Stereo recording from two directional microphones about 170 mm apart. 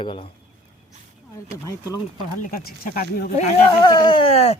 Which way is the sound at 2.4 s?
60° left (ahead or behind).